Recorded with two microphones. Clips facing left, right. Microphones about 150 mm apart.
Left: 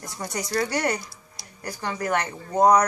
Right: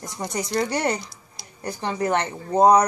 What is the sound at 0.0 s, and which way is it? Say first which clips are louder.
A woman's voice: right 3 dB; 20° right (ahead or behind).